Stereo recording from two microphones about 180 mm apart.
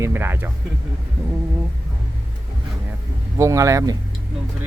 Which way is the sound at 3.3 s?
15° right (ahead or behind).